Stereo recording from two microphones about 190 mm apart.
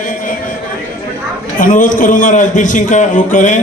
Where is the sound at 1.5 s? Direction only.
45° left (ahead or behind).